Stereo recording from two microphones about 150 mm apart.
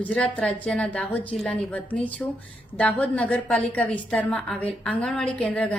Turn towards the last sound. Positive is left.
turn(degrees=10)  # may be behind; listen again after turning